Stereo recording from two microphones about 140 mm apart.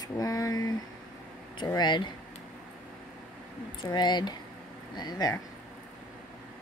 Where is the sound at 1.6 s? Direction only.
30° left (ahead or behind).